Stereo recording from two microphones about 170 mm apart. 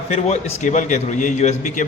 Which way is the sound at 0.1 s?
40° left (ahead or behind).